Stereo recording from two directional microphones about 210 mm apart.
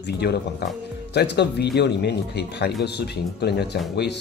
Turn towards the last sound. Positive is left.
turn(degrees=50)  # may be behind; listen again after turning